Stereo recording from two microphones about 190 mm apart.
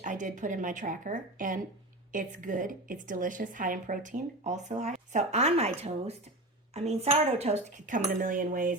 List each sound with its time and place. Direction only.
0.0 s a woman's voice: 40° right (ahead or behind)